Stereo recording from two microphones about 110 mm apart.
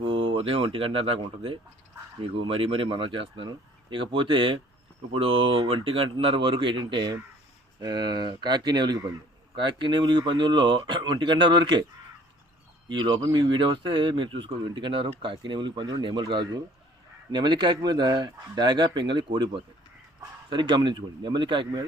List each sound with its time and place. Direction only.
0.0 s speech: 55° right (ahead or behind)
12.9 s speech: 45° right (ahead or behind)